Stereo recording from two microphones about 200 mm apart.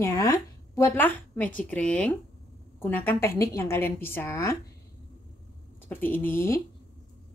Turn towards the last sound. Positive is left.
turn(degrees=10)  # may be behind; listen again after turning